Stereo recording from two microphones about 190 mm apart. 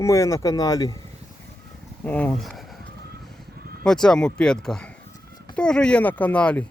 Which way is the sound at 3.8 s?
5° left (ahead or behind).